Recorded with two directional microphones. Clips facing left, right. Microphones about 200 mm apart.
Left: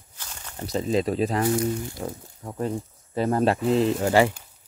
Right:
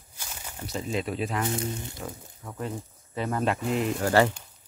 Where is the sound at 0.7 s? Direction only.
35° left (ahead or behind).